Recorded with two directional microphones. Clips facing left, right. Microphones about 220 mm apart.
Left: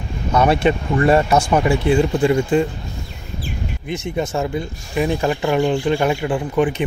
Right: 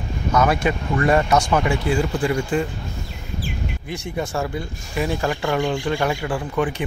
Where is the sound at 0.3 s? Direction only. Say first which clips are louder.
Left 4 dB; 30° left (ahead or behind).